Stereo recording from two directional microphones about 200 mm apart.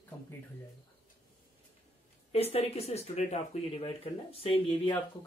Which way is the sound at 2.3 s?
30° left (ahead or behind).